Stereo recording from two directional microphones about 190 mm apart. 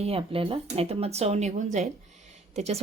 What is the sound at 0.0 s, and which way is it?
Speech, 30° right (ahead or behind).